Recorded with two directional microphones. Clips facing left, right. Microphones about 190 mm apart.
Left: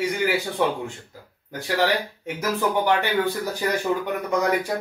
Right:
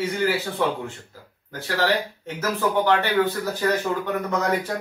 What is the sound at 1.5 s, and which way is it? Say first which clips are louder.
Speech: left 1 dB; 15° left (ahead or behind).